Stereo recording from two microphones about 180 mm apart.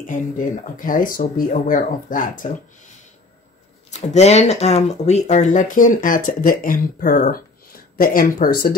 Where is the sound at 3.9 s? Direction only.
40° left (ahead or behind); by 8.7 s 55° left (ahead or behind).